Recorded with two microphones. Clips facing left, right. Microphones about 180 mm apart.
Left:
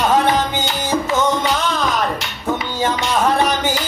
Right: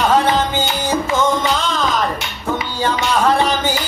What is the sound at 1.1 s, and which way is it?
Music, 20° left (ahead or behind).